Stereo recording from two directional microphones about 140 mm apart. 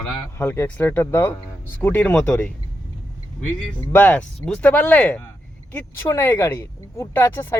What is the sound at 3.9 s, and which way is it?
Speech, 10° left (ahead or behind).